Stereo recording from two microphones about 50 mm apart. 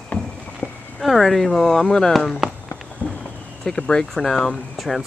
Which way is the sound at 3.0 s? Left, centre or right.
Left.